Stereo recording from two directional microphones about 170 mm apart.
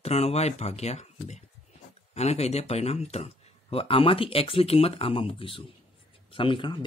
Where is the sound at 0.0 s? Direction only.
40° left (ahead or behind).